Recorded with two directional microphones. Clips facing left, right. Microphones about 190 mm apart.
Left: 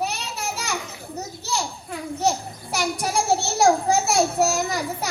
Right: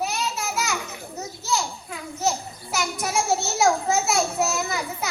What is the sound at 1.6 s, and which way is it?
Children playing, 35° left (ahead or behind).